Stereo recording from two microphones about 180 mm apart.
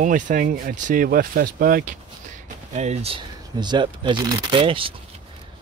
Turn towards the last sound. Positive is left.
turn(degrees=-30)  # may be behind; listen again after turning